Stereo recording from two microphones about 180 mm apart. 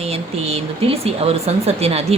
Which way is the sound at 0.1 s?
35° right (ahead or behind).